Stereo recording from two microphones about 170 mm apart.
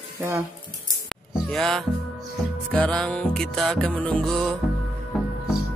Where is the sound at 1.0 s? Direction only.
Centre (ahead or behind).